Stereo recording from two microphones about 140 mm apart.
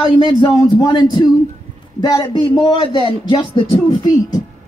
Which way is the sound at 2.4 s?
40° left (ahead or behind).